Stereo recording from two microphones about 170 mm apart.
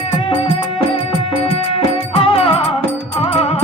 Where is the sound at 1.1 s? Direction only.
35° left (ahead or behind).